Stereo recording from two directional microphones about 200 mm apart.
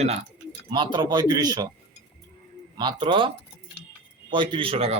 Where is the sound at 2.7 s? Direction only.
25° right (ahead or behind).